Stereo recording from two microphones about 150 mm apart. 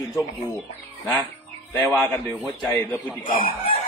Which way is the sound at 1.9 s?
20° left (ahead or behind).